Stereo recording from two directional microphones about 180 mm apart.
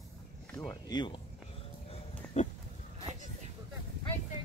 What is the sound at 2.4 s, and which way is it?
Goat, 40° left (ahead or behind).